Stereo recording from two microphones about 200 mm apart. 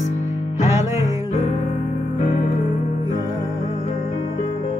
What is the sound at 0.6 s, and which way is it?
Music, 15° right (ahead or behind).